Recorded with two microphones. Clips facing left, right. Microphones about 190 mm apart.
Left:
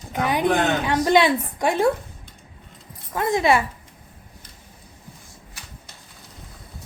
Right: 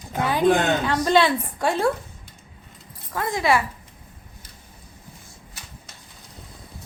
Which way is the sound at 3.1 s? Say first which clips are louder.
Left 3 dB; 20° left (ahead or behind).